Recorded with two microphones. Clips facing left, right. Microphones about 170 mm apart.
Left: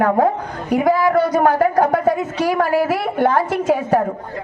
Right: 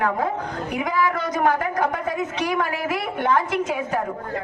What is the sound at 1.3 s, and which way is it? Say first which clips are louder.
A man's voice: left 6 dB; 50° left (ahead or behind).